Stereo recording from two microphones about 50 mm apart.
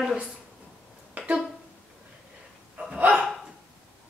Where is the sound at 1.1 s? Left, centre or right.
Right.